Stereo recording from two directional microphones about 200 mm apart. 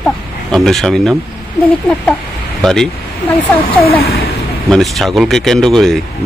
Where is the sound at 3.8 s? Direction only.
50° left (ahead or behind).